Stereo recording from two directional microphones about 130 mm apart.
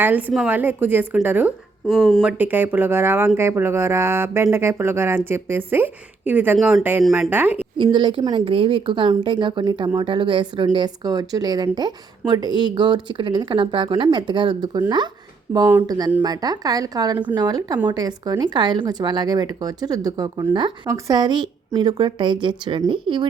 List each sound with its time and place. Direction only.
0.0 s speech: 15° right (ahead or behind)
1.9 s speech: 5° left (ahead or behind)
2.2 s speech: 15° right (ahead or behind)
7.8 s a woman's voice: 40° right (ahead or behind)